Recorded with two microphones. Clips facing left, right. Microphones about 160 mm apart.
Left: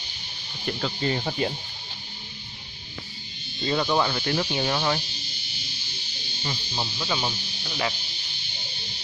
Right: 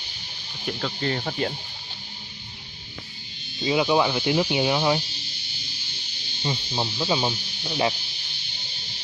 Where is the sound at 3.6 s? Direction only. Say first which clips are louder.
Right 3 dB; 10° right (ahead or behind).